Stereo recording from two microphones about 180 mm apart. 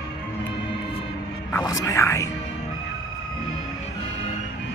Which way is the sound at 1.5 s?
15° left (ahead or behind).